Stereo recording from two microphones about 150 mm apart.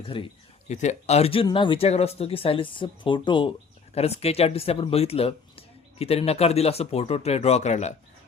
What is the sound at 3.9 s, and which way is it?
Speech, 45° left (ahead or behind).